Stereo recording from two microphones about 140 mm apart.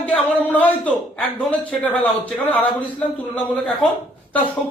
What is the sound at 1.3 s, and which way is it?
A man's voice, 10° left (ahead or behind).